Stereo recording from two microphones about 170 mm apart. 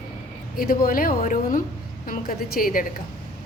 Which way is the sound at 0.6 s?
55° left (ahead or behind).